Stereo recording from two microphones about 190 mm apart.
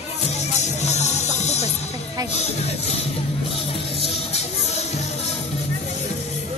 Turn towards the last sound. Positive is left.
turn(degrees=35)  # may be behind; listen again after turning